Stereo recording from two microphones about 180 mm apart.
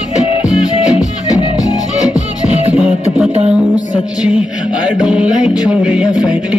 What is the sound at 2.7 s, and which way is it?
Music, 5° right (ahead or behind).